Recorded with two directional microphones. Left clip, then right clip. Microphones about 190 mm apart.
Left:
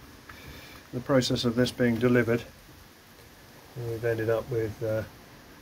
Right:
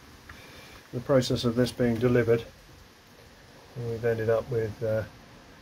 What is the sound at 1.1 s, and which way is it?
Speech, 20° right (ahead or behind).